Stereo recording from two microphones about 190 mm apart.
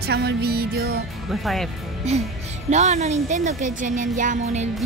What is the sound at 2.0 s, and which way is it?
Speech, 35° right (ahead or behind).